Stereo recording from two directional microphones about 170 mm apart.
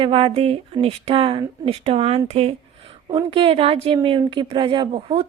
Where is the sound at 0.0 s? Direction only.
30° right (ahead or behind).